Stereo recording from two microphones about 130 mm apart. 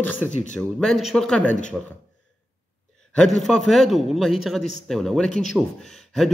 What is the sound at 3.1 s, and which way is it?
Speech, 5° left (ahead or behind).